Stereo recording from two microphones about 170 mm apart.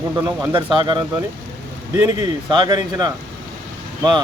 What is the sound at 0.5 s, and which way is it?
Speech, 30° right (ahead or behind).